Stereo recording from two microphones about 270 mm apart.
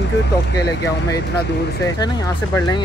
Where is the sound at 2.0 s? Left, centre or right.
Centre.